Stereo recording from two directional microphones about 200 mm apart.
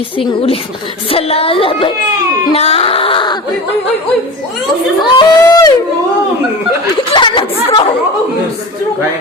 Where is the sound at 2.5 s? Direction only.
30° left (ahead or behind).